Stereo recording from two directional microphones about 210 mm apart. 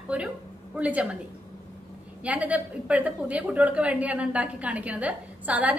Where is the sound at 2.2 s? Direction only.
5° right (ahead or behind).